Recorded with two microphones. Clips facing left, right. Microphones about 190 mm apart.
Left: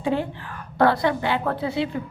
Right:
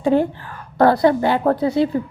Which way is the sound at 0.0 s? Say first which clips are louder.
Right 7 dB; 45° right (ahead or behind).